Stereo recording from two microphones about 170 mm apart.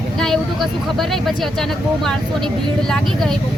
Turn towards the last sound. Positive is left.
turn(degrees=5)  # may be behind; listen again after turning